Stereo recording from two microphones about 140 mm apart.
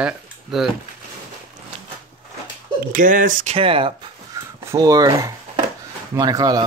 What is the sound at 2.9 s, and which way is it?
Speech, 70° right (ahead or behind).